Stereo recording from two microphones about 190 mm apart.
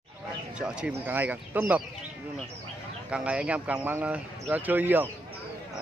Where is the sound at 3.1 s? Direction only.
5° right (ahead or behind).